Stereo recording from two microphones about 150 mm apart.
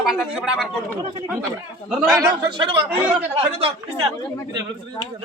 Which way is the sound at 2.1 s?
25° right (ahead or behind).